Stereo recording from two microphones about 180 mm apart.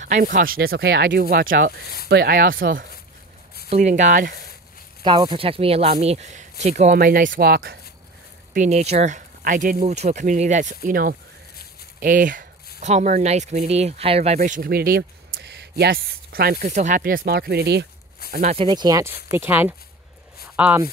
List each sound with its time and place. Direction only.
0.0 s speech: 45° right (ahead or behind)
2.0 s speech: 60° right (ahead or behind)
3.7 s speech: 40° right (ahead or behind)
5.0 s speech: 25° right (ahead or behind)
7.0 s speech: 50° right (ahead or behind)
8.5 s speech: 35° right (ahead or behind); by 15.7 s 70° right (ahead or behind)
15.8 s speech: 60° right (ahead or behind)
18.3 s speech: 45° right (ahead or behind)
18.6 s speech: 25° right (ahead or behind); by 20.8 s 10° right (ahead or behind)